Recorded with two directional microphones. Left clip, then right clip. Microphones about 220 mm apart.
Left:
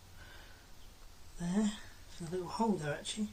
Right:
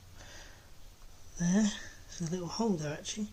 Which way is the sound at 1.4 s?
45° right (ahead or behind).